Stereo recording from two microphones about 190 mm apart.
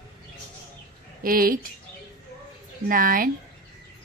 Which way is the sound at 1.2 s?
50° right (ahead or behind).